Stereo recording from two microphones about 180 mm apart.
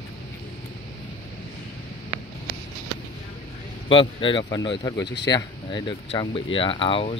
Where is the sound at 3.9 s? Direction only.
30° left (ahead or behind).